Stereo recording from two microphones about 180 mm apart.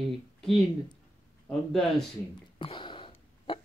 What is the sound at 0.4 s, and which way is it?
Speech, centre (ahead or behind).